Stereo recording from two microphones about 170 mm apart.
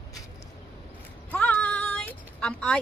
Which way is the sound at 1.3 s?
10° left (ahead or behind).